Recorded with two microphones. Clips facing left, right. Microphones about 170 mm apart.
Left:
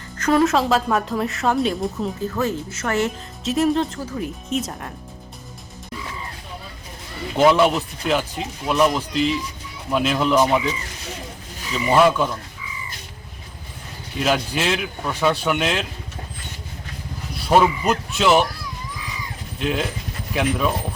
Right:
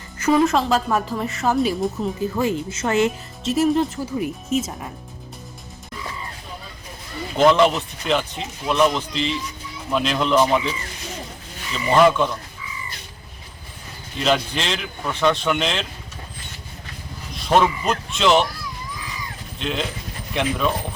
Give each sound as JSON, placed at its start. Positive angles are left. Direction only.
{"t": 0.2, "sound": "speech", "side_deg": 0}
{"t": 2.2, "sound": "speech", "side_deg": -10}
{"t": 3.4, "sound": "speech", "side_deg": 0}
{"t": 7.3, "sound": "speech", "side_deg": 5}
{"t": 14.2, "sound": "speech", "side_deg": 5}
{"t": 17.5, "sound": "speech", "side_deg": 5}
{"t": 19.5, "sound": "speech", "side_deg": 5}